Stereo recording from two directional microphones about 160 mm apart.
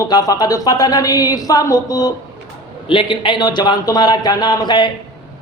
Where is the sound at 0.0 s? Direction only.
25° left (ahead or behind).